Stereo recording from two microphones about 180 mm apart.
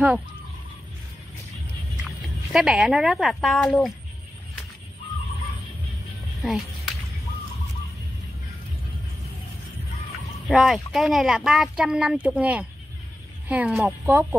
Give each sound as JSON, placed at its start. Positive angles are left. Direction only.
{"t": 2.5, "sound": "speech", "side_deg": -5}
{"t": 6.4, "sound": "music", "side_deg": 0}
{"t": 10.5, "sound": "speech", "side_deg": 0}